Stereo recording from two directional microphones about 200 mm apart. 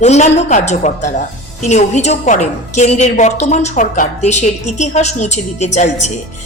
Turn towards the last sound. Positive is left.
turn(degrees=35)  # may be behind; listen again after turning